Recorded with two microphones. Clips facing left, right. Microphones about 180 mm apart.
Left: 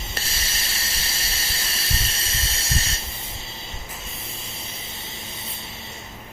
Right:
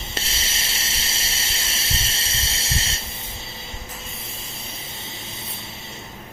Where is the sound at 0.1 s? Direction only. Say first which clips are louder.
Right 4 dB; 25° right (ahead or behind).